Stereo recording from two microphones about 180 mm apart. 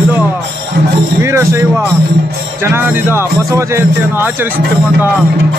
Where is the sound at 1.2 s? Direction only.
15° right (ahead or behind).